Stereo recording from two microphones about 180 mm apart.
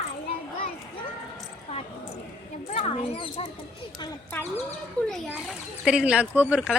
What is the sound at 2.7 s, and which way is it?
Speech, 40° left (ahead or behind).